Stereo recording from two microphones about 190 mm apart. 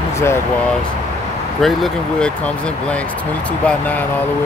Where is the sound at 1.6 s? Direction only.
5° left (ahead or behind).